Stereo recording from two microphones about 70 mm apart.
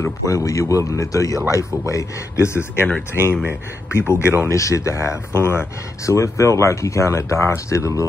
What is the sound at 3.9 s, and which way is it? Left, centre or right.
Speech, left.